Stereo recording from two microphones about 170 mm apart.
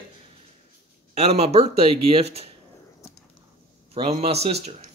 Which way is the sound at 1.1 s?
40° right (ahead or behind).